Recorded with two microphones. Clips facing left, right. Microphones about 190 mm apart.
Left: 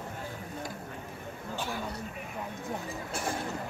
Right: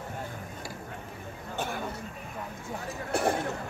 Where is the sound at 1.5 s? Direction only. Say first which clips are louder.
Right 2 dB; 55° right (ahead or behind).